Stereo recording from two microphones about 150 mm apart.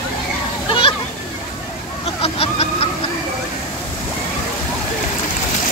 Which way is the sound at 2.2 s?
40° left (ahead or behind).